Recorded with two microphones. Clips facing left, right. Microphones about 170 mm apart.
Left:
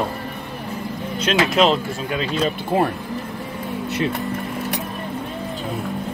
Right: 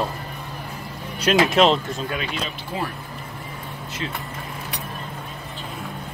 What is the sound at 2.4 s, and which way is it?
Speech, 55° left (ahead or behind).